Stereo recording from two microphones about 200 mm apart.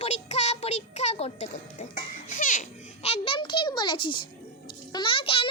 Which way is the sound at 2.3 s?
40° left (ahead or behind).